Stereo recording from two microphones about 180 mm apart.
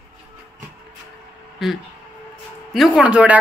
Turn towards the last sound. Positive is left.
turn(degrees=-5)  # may be behind; listen again after turning